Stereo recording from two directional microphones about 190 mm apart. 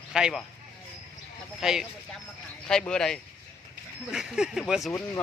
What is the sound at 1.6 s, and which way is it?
Speech, centre (ahead or behind).